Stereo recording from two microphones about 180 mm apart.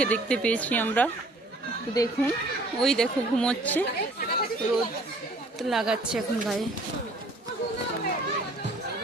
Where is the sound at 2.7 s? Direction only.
5° left (ahead or behind).